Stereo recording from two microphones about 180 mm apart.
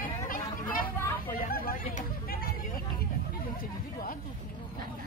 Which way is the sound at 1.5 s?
50° left (ahead or behind).